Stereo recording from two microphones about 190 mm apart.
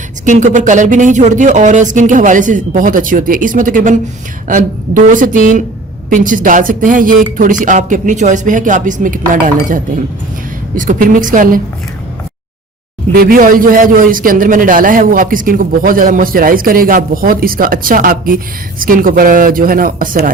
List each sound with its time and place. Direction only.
0.3 s a man's voice: 40° right (ahead or behind)
10.8 s a man's voice: 45° right (ahead or behind)
13.1 s a man's voice: 50° right (ahead or behind)